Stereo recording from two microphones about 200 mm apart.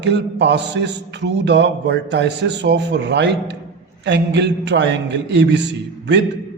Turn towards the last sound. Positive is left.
turn(degrees=-60)  # may be behind; listen again after turning